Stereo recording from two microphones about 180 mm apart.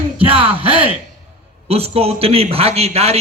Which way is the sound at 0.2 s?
30° right (ahead or behind).